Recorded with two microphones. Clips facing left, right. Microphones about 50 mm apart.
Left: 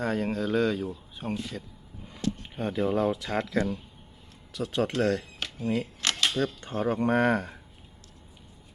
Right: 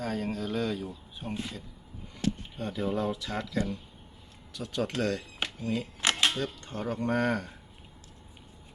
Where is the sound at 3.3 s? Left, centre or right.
Left.